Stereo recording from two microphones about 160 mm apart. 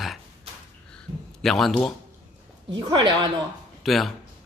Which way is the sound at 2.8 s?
30° right (ahead or behind).